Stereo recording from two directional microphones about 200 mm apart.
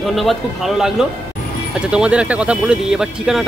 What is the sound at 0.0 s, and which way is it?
Speech, centre (ahead or behind).